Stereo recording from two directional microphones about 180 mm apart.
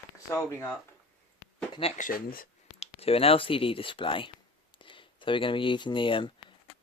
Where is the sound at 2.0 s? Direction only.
50° left (ahead or behind).